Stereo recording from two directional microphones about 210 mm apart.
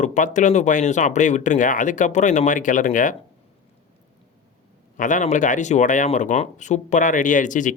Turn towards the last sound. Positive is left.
turn(degrees=35)  # may be behind; listen again after turning